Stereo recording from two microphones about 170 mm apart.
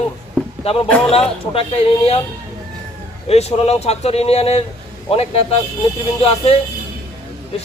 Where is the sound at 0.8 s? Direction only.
5° left (ahead or behind).